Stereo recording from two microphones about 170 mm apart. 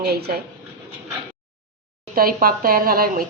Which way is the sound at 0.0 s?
65° right (ahead or behind).